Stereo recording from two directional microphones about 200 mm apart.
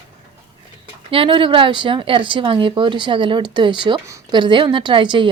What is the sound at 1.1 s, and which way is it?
Speech, 25° right (ahead or behind).